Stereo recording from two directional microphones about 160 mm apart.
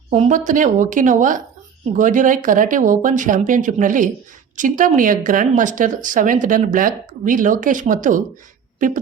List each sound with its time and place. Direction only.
0.1 s a woman's voice: 55° right (ahead or behind)